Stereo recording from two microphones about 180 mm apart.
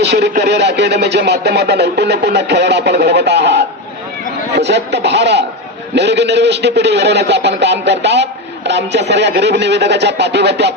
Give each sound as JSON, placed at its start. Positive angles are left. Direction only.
{"t": 0.0, "sound": "a man's voice", "side_deg": -70}